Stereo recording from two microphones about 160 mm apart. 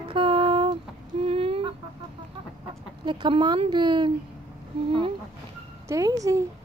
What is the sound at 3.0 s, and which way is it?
Speech, 30° right (ahead or behind).